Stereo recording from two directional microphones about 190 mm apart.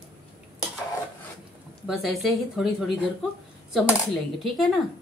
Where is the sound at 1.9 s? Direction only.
Centre (ahead or behind).